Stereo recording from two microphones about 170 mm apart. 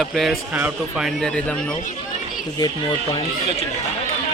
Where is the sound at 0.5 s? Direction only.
10° right (ahead or behind).